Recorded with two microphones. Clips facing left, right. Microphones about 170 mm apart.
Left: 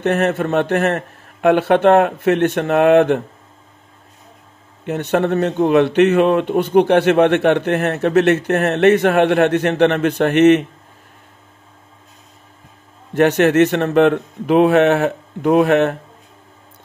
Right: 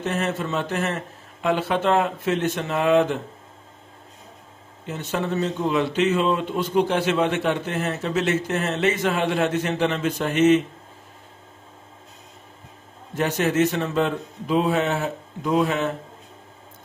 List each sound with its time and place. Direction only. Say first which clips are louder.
0.0 s speech: left 8 dB; 65° left (ahead or behind)
4.8 s speech: left 9 dB; 65° left (ahead or behind)
13.1 s a man's voice: left 9 dB; 70° left (ahead or behind)